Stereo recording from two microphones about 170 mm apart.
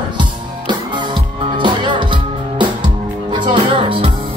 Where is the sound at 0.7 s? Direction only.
25° right (ahead or behind).